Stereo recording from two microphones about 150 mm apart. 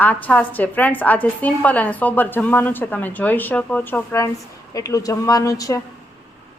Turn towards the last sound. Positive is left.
turn(degrees=20)  # may be behind; listen again after turning